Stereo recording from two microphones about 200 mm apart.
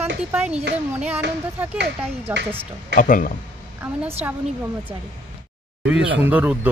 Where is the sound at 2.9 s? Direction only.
40° left (ahead or behind).